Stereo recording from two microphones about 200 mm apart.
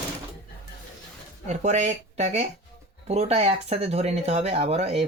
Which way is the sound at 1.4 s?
35° right (ahead or behind).